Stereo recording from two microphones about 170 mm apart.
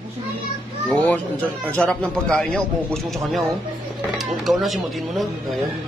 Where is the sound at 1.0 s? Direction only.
10° left (ahead or behind).